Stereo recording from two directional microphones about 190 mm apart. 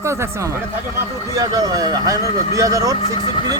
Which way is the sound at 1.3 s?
20° right (ahead or behind).